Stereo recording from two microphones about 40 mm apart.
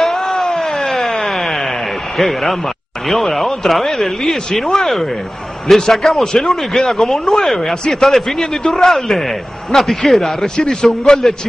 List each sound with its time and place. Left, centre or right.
0.0 s a sound: centre
2.1 s speech: centre
10.4 s a man's voice: centre